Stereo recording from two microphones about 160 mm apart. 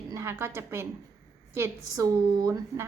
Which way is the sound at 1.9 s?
20° right (ahead or behind).